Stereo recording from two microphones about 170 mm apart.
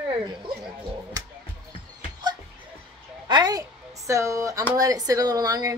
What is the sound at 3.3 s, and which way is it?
A woman's voice, 25° right (ahead or behind).